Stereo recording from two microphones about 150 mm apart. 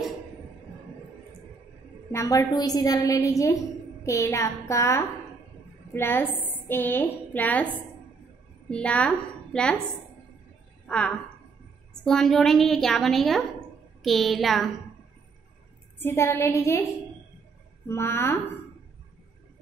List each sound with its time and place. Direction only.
2.1 s a woman's voice: 20° left (ahead or behind)
8.6 s a woman's voice: 5° left (ahead or behind)
10.9 s a woman's voice: 5° left (ahead or behind)
16.0 s a woman's voice: 15° left (ahead or behind)
17.8 s a woman's voice: 15° left (ahead or behind)